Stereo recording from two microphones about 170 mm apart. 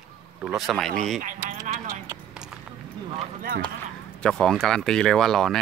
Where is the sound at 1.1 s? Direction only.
50° right (ahead or behind).